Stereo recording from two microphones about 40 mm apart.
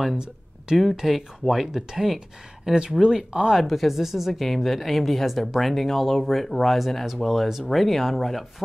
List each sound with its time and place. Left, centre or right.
0.9 s speech: centre
2.6 s speech: centre
3.6 s speech: centre
4.3 s speech: centre